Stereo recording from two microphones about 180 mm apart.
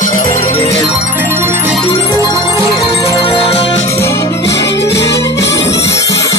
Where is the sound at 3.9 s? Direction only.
15° left (ahead or behind).